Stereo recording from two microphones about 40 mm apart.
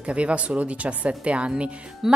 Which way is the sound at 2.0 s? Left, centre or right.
Centre.